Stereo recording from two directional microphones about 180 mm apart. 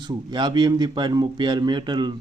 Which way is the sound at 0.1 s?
25° right (ahead or behind).